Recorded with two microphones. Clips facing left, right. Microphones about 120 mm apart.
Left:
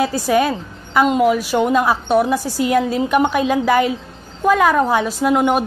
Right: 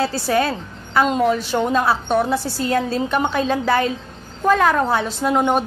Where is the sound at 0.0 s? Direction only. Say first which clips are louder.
Left 3 dB; 15° left (ahead or behind).